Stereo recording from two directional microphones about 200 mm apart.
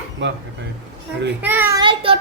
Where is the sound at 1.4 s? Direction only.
10° right (ahead or behind); by 2.1 s 25° right (ahead or behind).